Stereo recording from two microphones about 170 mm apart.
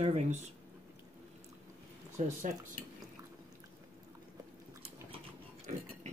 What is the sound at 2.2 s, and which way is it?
Speech, 45° right (ahead or behind).